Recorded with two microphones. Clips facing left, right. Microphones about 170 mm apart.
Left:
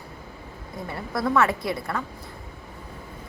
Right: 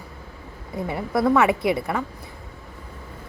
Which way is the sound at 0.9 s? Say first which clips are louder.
Right 5 dB; 15° right (ahead or behind).